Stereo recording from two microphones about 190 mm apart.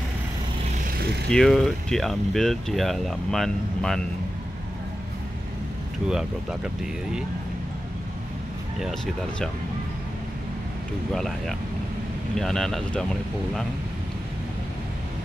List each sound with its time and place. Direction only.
1.3 s speech: centre (ahead or behind)
6.0 s speech: 5° right (ahead or behind)
8.8 s speech: centre (ahead or behind)
11.1 s speech: centre (ahead or behind)